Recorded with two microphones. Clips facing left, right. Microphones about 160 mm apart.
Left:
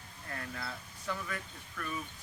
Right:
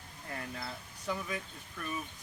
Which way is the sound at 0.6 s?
20° right (ahead or behind).